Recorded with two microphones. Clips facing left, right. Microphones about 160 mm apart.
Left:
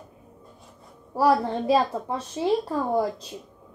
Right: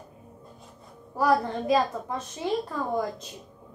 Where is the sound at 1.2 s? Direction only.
30° left (ahead or behind).